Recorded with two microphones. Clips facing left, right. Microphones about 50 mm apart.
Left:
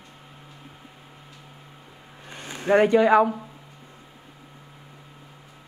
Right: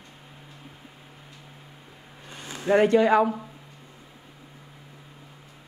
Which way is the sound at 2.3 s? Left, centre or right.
Left.